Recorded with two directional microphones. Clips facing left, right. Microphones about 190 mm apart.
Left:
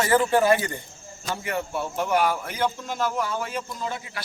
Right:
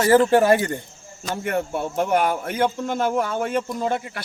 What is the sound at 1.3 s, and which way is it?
A man's voice, 50° right (ahead or behind).